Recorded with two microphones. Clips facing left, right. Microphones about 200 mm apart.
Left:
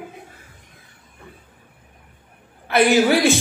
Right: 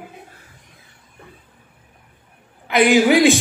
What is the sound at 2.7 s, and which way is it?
Speech, 15° right (ahead or behind).